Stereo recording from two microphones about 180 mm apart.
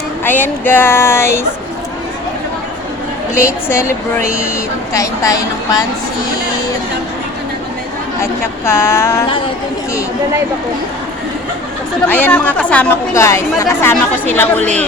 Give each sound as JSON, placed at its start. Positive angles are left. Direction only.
{"t": 0.3, "sound": "a woman's voice", "side_deg": 10}
{"t": 3.7, "sound": "a woman's voice", "side_deg": 15}
{"t": 4.9, "sound": "a woman's voice", "side_deg": 20}
{"t": 8.2, "sound": "a woman's voice", "side_deg": 15}
{"t": 12.0, "sound": "a woman's voice", "side_deg": 10}